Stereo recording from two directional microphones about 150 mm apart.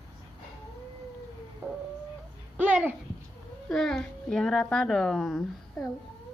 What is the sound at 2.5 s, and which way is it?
Babbling, 10° right (ahead or behind).